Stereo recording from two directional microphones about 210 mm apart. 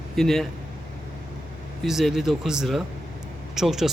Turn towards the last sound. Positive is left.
turn(degrees=0)  # may be behind; listen again after turning